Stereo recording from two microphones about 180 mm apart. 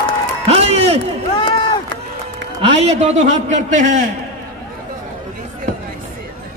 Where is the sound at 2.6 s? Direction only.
35° right (ahead or behind).